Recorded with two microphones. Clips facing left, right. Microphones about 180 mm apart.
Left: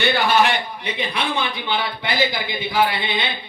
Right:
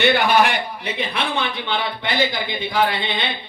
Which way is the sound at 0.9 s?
Centre (ahead or behind).